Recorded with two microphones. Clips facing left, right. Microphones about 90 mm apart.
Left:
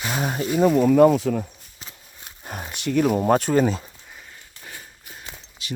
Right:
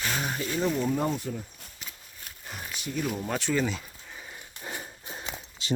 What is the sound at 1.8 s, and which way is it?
Walk, 30° left (ahead or behind).